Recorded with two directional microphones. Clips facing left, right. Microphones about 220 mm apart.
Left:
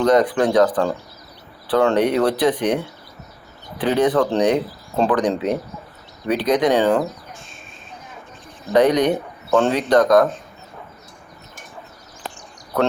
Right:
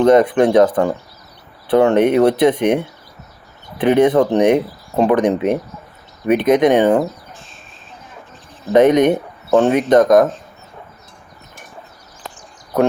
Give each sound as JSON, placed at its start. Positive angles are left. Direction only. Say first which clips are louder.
{"t": 0.0, "sound": "speech", "louder": "right 5 dB", "side_deg": -25}
{"t": 8.7, "sound": "speech", "louder": "right 4 dB", "side_deg": -20}